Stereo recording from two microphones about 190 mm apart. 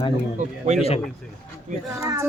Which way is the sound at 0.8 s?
30° left (ahead or behind).